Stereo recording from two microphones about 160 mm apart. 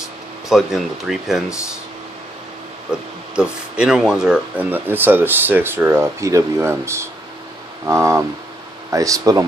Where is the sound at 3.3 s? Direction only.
5° right (ahead or behind).